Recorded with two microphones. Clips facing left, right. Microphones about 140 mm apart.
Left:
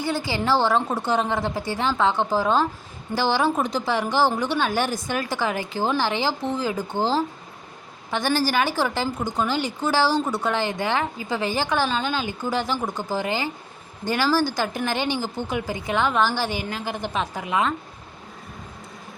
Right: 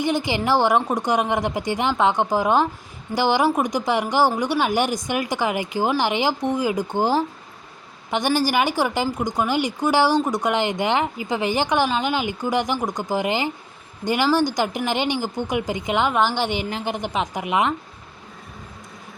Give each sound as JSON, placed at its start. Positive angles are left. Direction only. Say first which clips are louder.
{"t": 0.0, "sound": "speech", "louder": "right 3 dB", "side_deg": -20}